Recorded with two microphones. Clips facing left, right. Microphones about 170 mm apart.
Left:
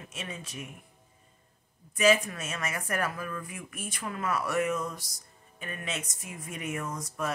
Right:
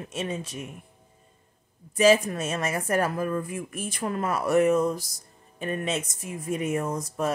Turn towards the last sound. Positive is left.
turn(degrees=-30)  # may be behind; listen again after turning